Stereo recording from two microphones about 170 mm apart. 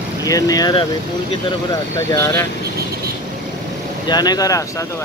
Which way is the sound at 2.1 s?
15° left (ahead or behind).